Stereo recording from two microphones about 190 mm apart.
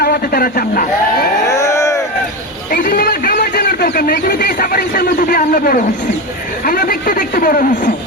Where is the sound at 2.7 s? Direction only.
45° left (ahead or behind).